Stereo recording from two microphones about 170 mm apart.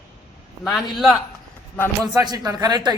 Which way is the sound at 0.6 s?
Centre (ahead or behind).